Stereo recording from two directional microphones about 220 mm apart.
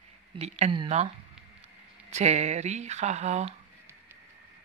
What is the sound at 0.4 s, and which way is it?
Speech, 25° right (ahead or behind).